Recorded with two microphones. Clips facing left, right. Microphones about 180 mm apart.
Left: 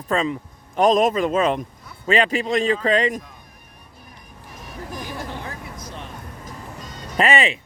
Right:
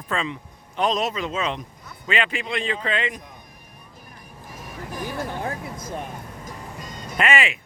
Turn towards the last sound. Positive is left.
turn(degrees=35)  # may be behind; listen again after turning